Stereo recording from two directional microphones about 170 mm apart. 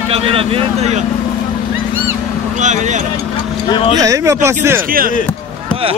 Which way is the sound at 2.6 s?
45° right (ahead or behind).